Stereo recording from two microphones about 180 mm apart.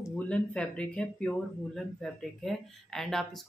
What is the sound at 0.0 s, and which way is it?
Speech, 10° left (ahead or behind).